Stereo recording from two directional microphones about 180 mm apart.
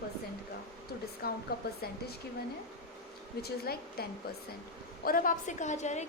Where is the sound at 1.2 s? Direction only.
55° left (ahead or behind).